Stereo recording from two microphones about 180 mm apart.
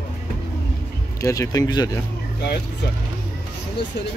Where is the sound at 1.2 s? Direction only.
20° left (ahead or behind).